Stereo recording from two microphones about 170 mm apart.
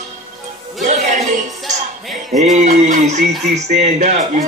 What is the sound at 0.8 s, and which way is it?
Music, 45° right (ahead or behind).